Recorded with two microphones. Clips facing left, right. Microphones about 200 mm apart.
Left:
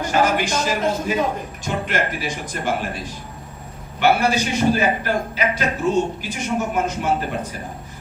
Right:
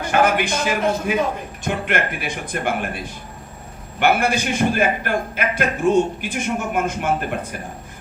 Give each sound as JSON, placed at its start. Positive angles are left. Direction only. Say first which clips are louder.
{"t": 0.1, "sound": "speech", "louder": "right 2 dB", "side_deg": -55}
{"t": 4.0, "sound": "a man's voice", "louder": "left 1 dB", "side_deg": -55}